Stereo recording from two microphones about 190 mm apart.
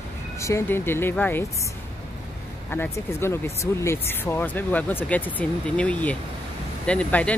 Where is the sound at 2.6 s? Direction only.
10° left (ahead or behind).